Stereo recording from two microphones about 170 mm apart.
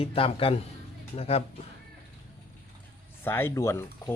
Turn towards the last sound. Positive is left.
turn(degrees=15)  # may be behind; listen again after turning